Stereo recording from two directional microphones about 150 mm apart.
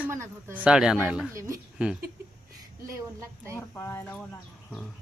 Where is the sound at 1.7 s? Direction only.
5° right (ahead or behind).